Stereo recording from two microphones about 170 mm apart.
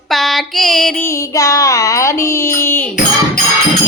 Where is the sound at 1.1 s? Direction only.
20° left (ahead or behind).